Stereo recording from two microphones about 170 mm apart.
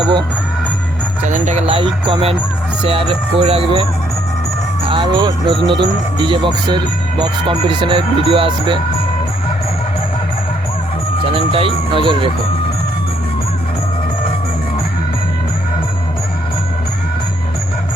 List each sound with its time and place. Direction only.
1.2 s speech: 45° right (ahead or behind)
4.9 s speech: 30° right (ahead or behind)
11.3 s speech: 35° right (ahead or behind)